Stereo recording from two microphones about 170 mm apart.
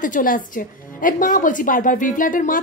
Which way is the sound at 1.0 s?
50° left (ahead or behind).